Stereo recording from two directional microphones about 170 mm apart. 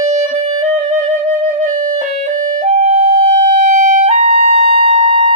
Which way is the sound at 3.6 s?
50° right (ahead or behind).